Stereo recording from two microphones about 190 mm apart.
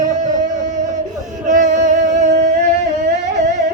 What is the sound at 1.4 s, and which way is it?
Music, 40° right (ahead or behind).